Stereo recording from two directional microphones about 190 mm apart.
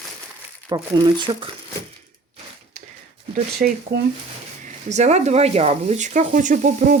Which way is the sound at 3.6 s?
45° right (ahead or behind).